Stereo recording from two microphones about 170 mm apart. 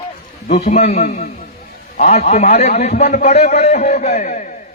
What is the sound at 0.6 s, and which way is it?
Speech, 35° left (ahead or behind).